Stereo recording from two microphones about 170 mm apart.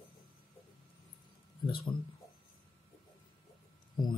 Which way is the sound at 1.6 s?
25° left (ahead or behind).